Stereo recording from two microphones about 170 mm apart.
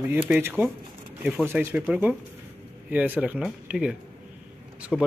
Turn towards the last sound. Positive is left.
turn(degrees=-5)  # may be behind; listen again after turning